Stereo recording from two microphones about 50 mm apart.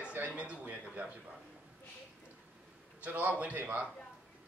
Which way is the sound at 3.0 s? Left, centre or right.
Right.